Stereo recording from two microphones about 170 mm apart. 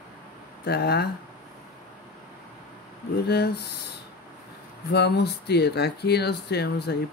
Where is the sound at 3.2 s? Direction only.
70° left (ahead or behind).